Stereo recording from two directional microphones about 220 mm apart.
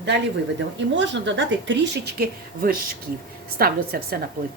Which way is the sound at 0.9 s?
55° right (ahead or behind).